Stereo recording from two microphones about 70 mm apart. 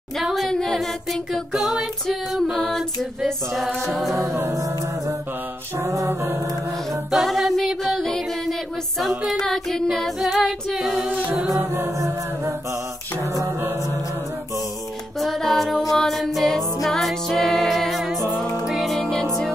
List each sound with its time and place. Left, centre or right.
0.2 s female singing: centre
2.5 s a capella: centre
4.2 s music: right
7.1 s music: centre
9.3 s a capella: centre
13.2 s mantra: right
15.1 s music: centre